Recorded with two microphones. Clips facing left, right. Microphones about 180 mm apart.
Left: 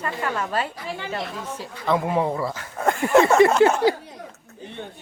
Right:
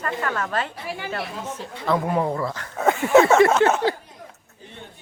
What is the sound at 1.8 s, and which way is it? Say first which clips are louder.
A woman's voice: even; centre (ahead or behind).